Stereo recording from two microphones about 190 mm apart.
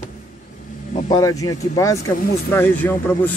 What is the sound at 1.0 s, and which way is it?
A man's voice, 20° left (ahead or behind).